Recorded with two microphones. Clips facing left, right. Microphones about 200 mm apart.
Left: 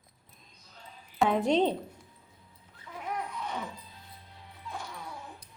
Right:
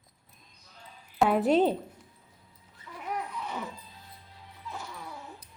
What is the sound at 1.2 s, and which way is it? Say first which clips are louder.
Speech: right 2 dB; 5° right (ahead or behind).